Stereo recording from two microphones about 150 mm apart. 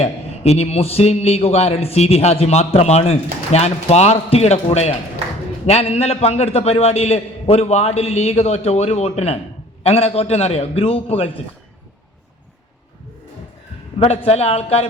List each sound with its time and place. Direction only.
0.0 s a man's voice: 45° left (ahead or behind)
14.0 s a man's voice: 40° left (ahead or behind)